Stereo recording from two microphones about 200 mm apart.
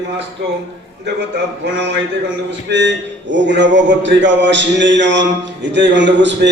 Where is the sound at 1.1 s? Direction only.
60° right (ahead or behind).